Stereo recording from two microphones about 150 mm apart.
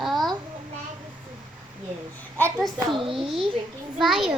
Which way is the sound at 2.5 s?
Centre (ahead or behind).